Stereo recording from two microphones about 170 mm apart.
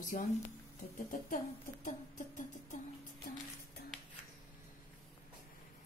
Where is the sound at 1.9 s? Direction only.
45° left (ahead or behind).